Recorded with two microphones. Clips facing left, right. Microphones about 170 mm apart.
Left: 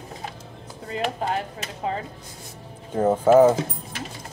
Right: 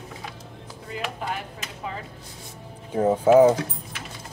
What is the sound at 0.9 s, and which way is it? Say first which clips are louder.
Chopping: left 5 dB; 35° left (ahead or behind).